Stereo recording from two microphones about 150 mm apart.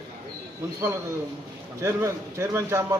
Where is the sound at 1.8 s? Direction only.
20° right (ahead or behind).